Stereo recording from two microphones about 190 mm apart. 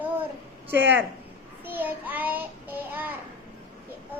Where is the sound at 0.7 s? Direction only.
65° right (ahead or behind).